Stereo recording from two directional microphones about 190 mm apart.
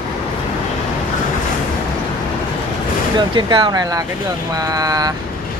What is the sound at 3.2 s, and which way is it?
Speech, 25° right (ahead or behind).